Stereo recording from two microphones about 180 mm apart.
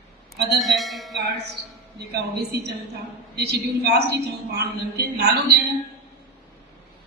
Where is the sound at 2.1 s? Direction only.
65° right (ahead or behind).